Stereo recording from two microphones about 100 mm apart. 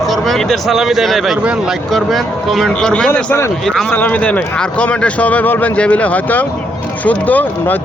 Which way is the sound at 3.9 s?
15° left (ahead or behind).